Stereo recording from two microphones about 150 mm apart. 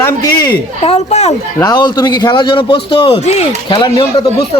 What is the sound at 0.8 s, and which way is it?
Speech, 45° left (ahead or behind).